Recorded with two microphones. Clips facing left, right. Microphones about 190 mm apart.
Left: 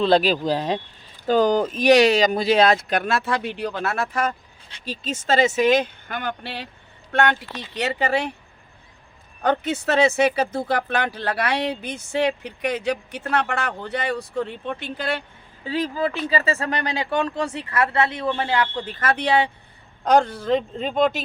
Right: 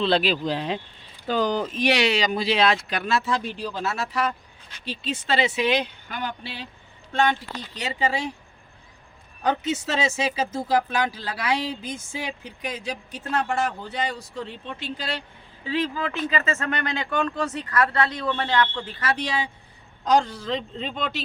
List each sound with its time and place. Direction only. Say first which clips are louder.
0.0 s speech: left 4 dB; 45° left (ahead or behind); by 8.4 s 65° left (ahead or behind)
9.4 s speech: left 2 dB; 60° left (ahead or behind)
15.6 s speech: left 3 dB; 40° left (ahead or behind)
18.3 s speech: left 2 dB; 5° left (ahead or behind)
18.7 s speech: left 4 dB; 35° left (ahead or behind)
19.0 s speech: left 6 dB; 60° left (ahead or behind)